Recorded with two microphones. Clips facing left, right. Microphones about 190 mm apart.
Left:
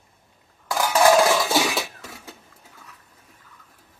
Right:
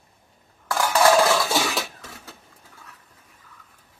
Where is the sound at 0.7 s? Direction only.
10° left (ahead or behind).